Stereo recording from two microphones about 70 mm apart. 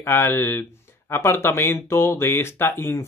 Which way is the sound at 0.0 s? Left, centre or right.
Left.